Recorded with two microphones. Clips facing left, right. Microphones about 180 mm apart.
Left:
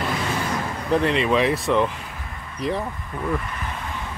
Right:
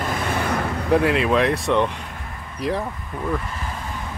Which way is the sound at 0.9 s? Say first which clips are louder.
Right 2 dB; 5° right (ahead or behind).